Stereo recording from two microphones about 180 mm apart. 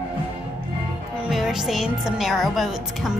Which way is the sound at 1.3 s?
Centre (ahead or behind).